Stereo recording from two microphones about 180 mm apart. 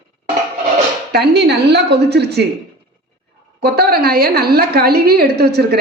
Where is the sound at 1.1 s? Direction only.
70° right (ahead or behind).